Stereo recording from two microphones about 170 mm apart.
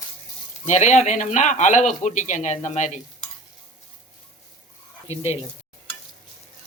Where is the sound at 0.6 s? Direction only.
45° left (ahead or behind).